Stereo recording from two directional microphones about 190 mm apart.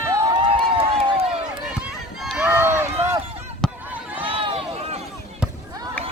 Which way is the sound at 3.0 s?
30° right (ahead or behind).